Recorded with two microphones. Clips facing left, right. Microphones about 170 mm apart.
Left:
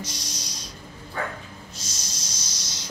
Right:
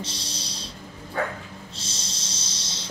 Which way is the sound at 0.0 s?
30° right (ahead or behind).